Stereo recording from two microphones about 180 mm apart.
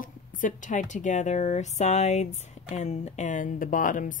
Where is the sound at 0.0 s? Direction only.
45° left (ahead or behind).